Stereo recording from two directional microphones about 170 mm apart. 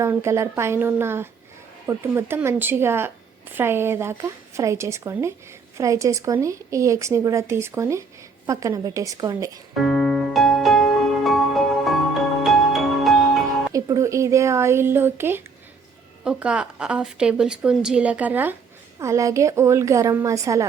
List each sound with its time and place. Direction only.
0.0 s a woman's voice: 15° right (ahead or behind)
9.7 s music: centre (ahead or behind)
13.7 s a woman's voice: 20° right (ahead or behind)